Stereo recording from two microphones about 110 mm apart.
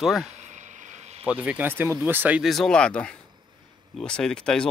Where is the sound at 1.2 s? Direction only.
10° right (ahead or behind).